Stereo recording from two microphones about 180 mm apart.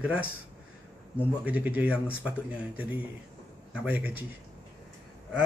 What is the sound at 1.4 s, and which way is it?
Speech, 10° right (ahead or behind).